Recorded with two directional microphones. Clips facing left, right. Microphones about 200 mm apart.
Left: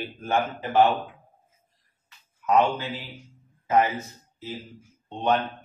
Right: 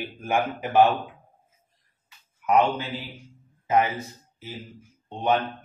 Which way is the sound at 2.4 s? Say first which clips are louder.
Even; 15° right (ahead or behind).